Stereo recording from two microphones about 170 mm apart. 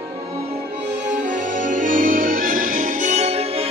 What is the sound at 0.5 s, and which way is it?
Music, 40° right (ahead or behind).